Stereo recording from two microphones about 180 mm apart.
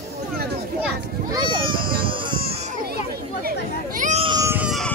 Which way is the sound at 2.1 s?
30° right (ahead or behind).